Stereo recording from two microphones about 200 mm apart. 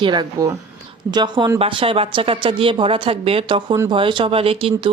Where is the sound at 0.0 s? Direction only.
20° right (ahead or behind).